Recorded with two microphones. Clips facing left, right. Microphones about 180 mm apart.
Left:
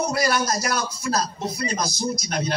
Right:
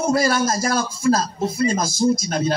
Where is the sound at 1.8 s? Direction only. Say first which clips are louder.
Right 7 dB; 50° right (ahead or behind).